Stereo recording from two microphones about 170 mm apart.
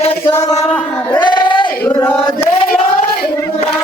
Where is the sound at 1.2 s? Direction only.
25° left (ahead or behind).